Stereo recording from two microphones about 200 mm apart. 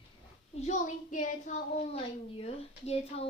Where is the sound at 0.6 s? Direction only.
35° left (ahead or behind).